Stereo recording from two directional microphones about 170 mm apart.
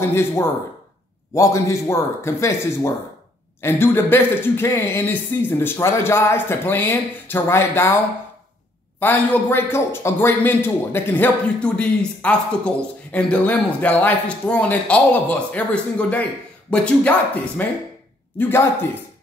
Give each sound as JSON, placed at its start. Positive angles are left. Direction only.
{"t": 0.1, "sound": "a man's voice", "side_deg": 15}
{"t": 9.0, "sound": "a man's voice", "side_deg": 10}